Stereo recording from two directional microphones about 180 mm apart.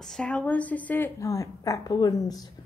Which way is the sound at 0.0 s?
5° left (ahead or behind).